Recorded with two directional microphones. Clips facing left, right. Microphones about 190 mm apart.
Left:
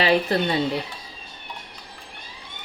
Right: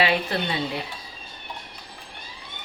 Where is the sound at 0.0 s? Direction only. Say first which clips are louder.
Left 3 dB; 35° left (ahead or behind).